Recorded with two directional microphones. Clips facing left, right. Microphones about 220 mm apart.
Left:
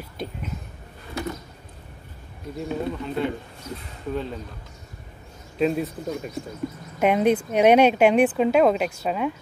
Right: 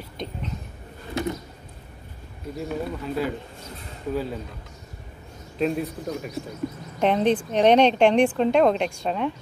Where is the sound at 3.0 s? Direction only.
5° right (ahead or behind).